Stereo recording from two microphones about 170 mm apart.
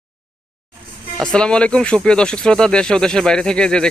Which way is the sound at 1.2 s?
5° left (ahead or behind).